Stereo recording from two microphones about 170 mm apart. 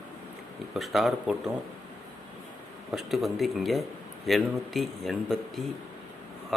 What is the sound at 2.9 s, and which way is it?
Speech, centre (ahead or behind).